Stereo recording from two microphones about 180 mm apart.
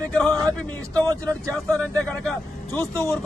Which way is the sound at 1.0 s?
20° right (ahead or behind).